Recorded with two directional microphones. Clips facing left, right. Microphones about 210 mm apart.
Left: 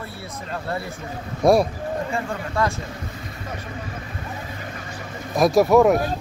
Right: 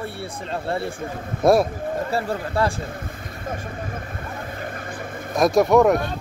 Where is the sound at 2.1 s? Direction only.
35° right (ahead or behind).